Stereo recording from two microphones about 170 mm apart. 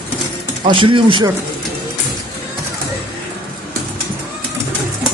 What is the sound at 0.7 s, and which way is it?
Speech, 30° right (ahead or behind).